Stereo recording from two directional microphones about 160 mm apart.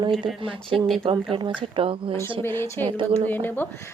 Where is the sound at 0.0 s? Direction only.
30° right (ahead or behind).